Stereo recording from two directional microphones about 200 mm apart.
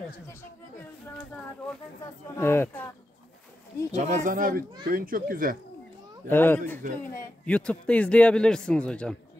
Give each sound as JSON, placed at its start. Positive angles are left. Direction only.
{"t": 2.3, "sound": "speech", "side_deg": 10}
{"t": 3.9, "sound": "a child's voice", "side_deg": -35}
{"t": 6.2, "sound": "a man's voice", "side_deg": 10}